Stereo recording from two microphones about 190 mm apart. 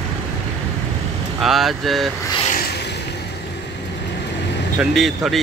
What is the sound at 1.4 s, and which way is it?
Speech, centre (ahead or behind).